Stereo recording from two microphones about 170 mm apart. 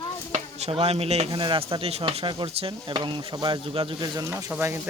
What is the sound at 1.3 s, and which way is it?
Speech, 30° right (ahead or behind).